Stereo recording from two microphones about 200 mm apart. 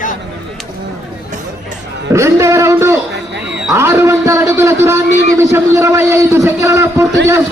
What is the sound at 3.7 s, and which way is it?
A man's voice, 10° right (ahead or behind).